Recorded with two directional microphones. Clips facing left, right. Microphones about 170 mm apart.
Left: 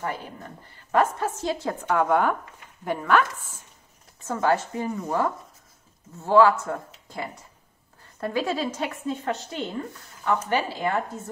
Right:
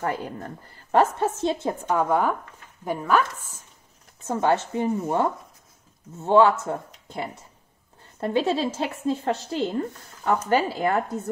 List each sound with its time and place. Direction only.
0.0 s a woman's voice: 35° right (ahead or behind); by 3.3 s 10° right (ahead or behind)
4.3 s a woman's voice: 25° right (ahead or behind)
10.5 s speech: 45° right (ahead or behind)